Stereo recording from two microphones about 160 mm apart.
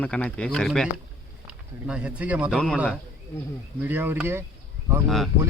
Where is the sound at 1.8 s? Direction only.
5° right (ahead or behind).